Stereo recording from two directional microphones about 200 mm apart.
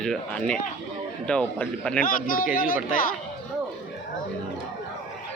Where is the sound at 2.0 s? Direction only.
45° left (ahead or behind).